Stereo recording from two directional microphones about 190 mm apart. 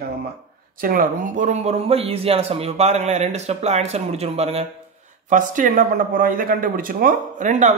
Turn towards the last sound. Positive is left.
turn(degrees=-40)  # may be behind; listen again after turning